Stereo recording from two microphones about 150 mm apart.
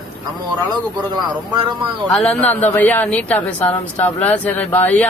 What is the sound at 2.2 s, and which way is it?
A man's voice, 5° left (ahead or behind).